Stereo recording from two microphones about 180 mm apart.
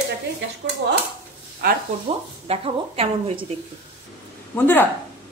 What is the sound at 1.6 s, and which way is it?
Speech, 55° right (ahead or behind).